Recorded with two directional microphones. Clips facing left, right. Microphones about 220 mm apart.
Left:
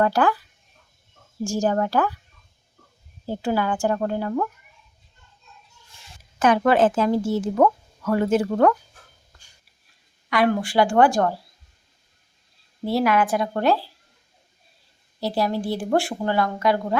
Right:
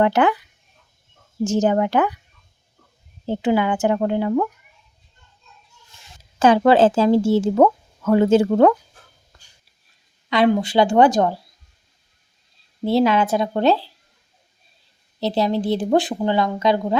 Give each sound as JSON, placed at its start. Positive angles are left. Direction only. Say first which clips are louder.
{"t": 0.0, "sound": "a woman's voice", "louder": "right 3 dB", "side_deg": -20}
{"t": 1.5, "sound": "a woman's voice", "louder": "right 4 dB", "side_deg": -20}
{"t": 3.2, "sound": "a woman's voice", "louder": "right 4 dB", "side_deg": -20}
{"t": 6.4, "sound": "a woman's voice", "louder": "right 4 dB", "side_deg": -30}
{"t": 10.2, "sound": "a woman's voice", "louder": "right 4 dB", "side_deg": -25}
{"t": 12.8, "sound": "a woman's voice", "louder": "right 3 dB", "side_deg": -25}
{"t": 15.2, "sound": "a woman's voice", "louder": "right 3 dB", "side_deg": -20}